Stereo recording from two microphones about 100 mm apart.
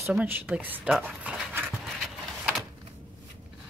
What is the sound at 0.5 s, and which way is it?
Speech, 10° right (ahead or behind).